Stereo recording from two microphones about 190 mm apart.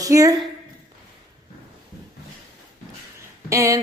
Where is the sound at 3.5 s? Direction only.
15° right (ahead or behind).